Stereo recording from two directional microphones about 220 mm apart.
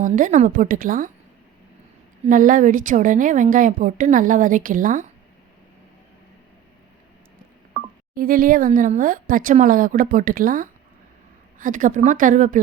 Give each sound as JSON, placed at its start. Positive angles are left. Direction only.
{"t": 0.0, "sound": "a woman's voice", "side_deg": -35}
{"t": 2.2, "sound": "a woman's voice", "side_deg": -35}
{"t": 8.1, "sound": "a woman's voice", "side_deg": -40}